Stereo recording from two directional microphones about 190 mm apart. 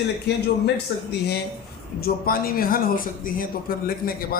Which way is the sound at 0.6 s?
60° left (ahead or behind).